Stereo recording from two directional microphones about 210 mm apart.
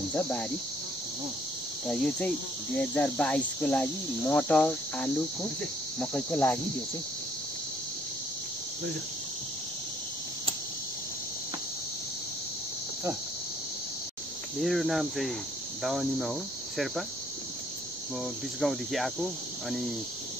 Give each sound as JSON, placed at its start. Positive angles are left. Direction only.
{"t": 0.1, "sound": "cricket", "side_deg": 5}
{"t": 1.9, "sound": "cricket", "side_deg": 5}
{"t": 14.6, "sound": "cricket", "side_deg": 0}
{"t": 18.2, "sound": "cricket", "side_deg": 0}